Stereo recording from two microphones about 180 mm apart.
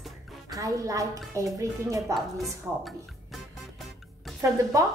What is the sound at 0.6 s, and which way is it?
Speech, 20° right (ahead or behind).